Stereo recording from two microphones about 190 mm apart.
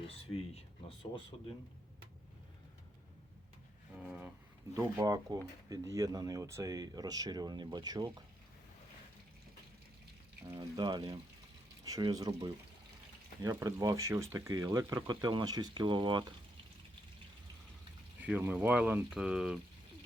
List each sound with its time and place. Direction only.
0.3 s speech: 30° left (ahead or behind)
4.0 s speech: 5° right (ahead or behind)
4.8 s speech: 15° right (ahead or behind)
10.5 s speech: 25° right (ahead or behind)
18.2 s speech: 10° right (ahead or behind)